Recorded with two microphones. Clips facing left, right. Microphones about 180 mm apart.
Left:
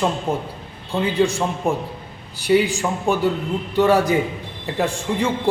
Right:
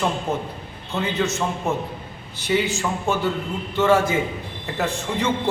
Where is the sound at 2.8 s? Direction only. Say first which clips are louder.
Left 3 dB; 15° left (ahead or behind).